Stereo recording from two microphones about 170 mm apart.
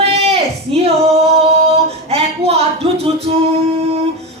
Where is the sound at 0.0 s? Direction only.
35° right (ahead or behind).